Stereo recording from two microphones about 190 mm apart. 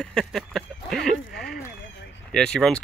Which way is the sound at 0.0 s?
5° left (ahead or behind).